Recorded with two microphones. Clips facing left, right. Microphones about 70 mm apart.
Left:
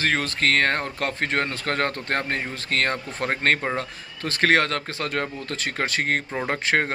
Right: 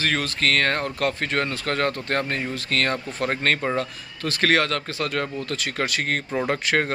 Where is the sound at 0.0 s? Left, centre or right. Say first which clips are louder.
Left 1 dB; left.